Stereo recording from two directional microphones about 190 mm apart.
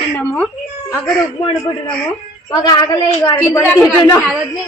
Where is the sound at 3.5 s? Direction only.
10° left (ahead or behind).